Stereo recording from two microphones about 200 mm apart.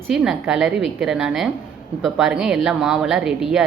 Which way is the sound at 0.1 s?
Centre (ahead or behind).